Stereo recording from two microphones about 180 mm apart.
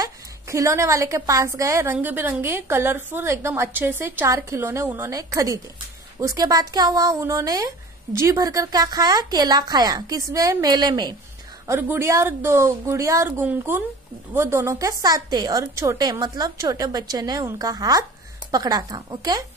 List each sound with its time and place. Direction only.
0.0 s a woman's voice: 15° right (ahead or behind)